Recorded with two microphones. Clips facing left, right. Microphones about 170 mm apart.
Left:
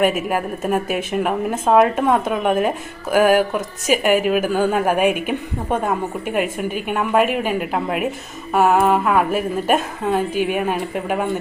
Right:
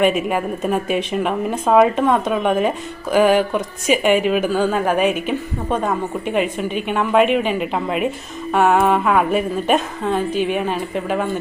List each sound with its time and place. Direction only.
0.0 s a woman's voice: 5° left (ahead or behind)